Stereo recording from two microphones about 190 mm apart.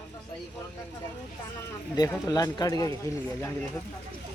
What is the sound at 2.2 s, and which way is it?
Speech, 20° left (ahead or behind).